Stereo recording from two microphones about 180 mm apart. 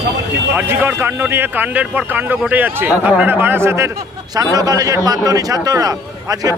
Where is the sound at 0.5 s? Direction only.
10° right (ahead or behind).